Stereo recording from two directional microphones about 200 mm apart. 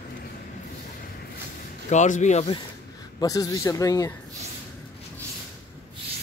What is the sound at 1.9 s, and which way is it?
Speech, 35° left (ahead or behind).